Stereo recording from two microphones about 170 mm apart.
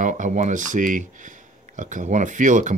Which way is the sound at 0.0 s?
45° right (ahead or behind).